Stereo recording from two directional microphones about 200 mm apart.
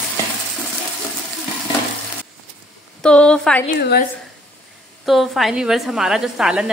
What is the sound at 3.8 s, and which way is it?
Speech, 50° left (ahead or behind).